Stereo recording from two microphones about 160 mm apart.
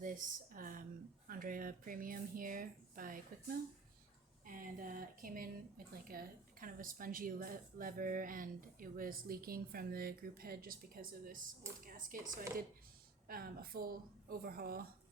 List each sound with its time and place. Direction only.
0.0 s speech: 60° right (ahead or behind)
4.4 s a woman's voice: 60° right (ahead or behind)